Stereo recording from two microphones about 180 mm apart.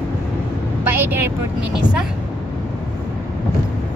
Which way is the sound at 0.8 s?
10° right (ahead or behind).